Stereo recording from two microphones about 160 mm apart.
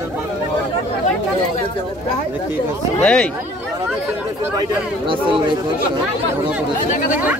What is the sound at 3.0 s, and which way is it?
Speech, 5° left (ahead or behind).